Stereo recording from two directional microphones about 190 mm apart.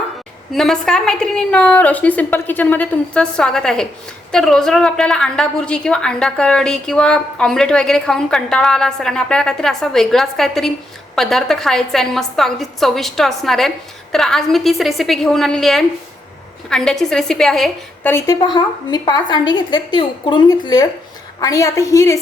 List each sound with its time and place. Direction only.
0.5 s a woman's voice: centre (ahead or behind)
18.1 s a woman's voice: 20° left (ahead or behind)